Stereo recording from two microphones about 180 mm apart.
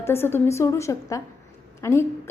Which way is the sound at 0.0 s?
15° left (ahead or behind).